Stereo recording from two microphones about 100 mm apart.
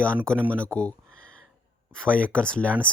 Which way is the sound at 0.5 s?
10° left (ahead or behind).